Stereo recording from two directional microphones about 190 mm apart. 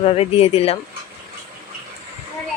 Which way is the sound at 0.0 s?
30° left (ahead or behind).